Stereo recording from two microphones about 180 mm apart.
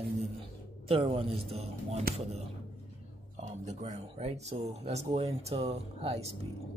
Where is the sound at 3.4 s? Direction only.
40° right (ahead or behind).